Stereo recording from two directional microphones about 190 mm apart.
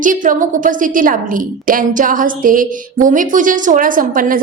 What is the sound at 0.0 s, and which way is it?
A woman's voice, 45° right (ahead or behind).